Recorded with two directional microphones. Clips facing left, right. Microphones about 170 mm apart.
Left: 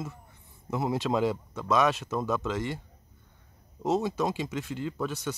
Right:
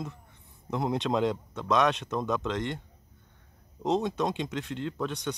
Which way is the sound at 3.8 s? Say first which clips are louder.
Even; 5° left (ahead or behind).